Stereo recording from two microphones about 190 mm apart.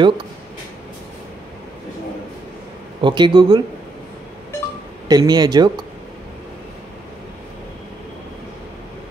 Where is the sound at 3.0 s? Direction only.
25° right (ahead or behind).